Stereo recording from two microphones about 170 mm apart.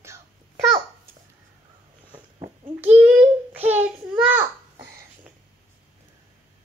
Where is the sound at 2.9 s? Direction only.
10° right (ahead or behind).